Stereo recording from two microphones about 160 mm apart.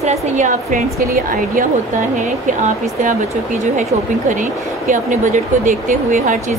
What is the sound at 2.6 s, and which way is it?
Speech, 50° right (ahead or behind).